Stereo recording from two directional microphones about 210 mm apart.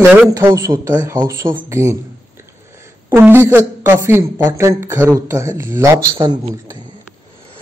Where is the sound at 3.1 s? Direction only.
10° right (ahead or behind).